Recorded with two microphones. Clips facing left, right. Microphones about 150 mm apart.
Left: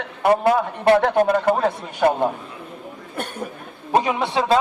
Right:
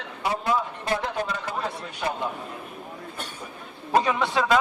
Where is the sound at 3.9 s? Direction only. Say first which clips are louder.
Left 3 dB; 20° left (ahead or behind).